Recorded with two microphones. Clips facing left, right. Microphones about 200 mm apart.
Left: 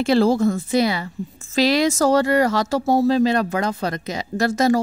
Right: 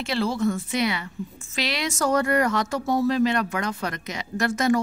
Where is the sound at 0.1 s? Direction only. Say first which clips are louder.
Left 7 dB; 40° left (ahead or behind).